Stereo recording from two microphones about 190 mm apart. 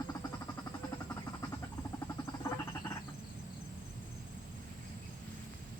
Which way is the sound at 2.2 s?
15° left (ahead or behind).